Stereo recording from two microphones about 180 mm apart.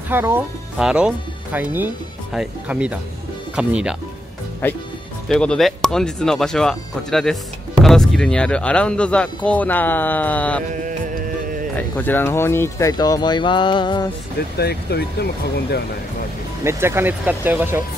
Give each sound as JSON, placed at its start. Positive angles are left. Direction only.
{"t": 0.1, "sound": "speech", "side_deg": -10}
{"t": 4.6, "sound": "speech", "side_deg": 10}
{"t": 11.7, "sound": "speech", "side_deg": 10}
{"t": 14.6, "sound": "speech", "side_deg": 65}
{"t": 16.6, "sound": "speech", "side_deg": -15}